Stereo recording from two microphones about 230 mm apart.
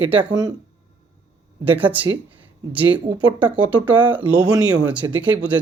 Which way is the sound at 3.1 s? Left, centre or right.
Centre.